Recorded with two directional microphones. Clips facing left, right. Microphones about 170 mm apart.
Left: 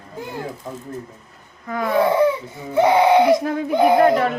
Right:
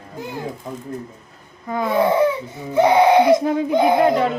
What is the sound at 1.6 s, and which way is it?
Baby cry, 25° right (ahead or behind).